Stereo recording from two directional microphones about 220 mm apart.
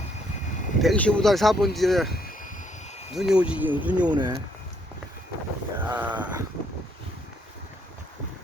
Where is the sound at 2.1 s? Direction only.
40° left (ahead or behind).